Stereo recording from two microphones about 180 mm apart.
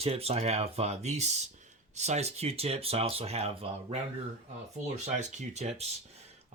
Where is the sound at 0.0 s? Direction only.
35° right (ahead or behind).